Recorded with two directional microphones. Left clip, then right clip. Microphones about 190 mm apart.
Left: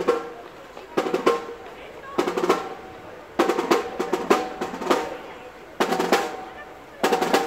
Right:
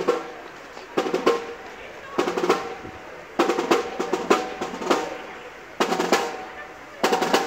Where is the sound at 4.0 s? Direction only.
5° right (ahead or behind).